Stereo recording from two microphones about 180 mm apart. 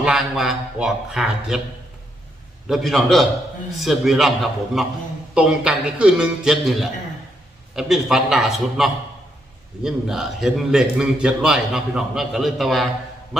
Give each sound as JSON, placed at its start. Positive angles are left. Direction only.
{"t": 0.0, "sound": "a man's voice", "side_deg": 0}
{"t": 2.6, "sound": "a man's voice", "side_deg": 0}